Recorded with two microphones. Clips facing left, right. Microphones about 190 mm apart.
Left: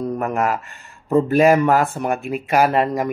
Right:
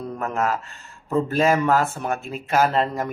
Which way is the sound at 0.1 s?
15° left (ahead or behind).